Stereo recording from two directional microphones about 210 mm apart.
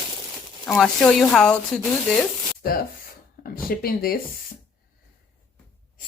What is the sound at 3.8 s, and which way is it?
Speech, 45° left (ahead or behind).